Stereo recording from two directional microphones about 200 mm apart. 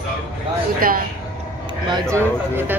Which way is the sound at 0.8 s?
45° right (ahead or behind).